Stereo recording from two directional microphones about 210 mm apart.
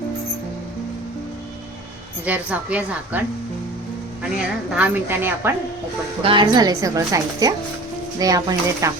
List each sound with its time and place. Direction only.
2.2 s a woman's voice: 5° right (ahead or behind)
6.2 s a woman's voice: 20° right (ahead or behind)